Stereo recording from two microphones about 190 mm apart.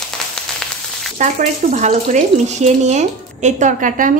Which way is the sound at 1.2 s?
40° right (ahead or behind).